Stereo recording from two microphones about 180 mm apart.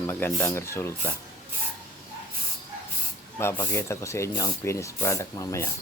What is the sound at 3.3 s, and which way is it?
Speech, 15° left (ahead or behind).